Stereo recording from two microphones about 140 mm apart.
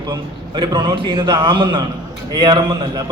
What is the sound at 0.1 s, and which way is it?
A man's voice, 35° right (ahead or behind).